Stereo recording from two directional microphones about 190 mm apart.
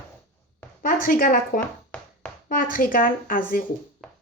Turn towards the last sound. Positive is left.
turn(degrees=45)  # may be behind; listen again after turning